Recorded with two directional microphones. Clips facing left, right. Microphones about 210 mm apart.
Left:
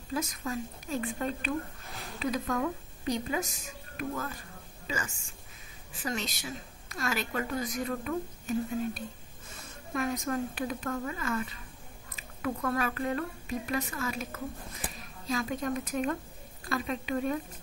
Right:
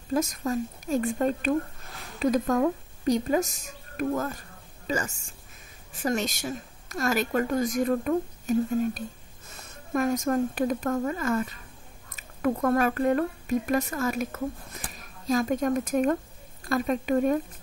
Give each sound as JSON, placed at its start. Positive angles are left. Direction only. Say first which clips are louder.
{"t": 0.1, "sound": "a woman's voice", "louder": "right 7 dB", "side_deg": -45}